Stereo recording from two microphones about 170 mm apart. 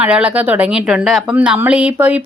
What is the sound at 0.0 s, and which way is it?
Speech, 10° right (ahead or behind).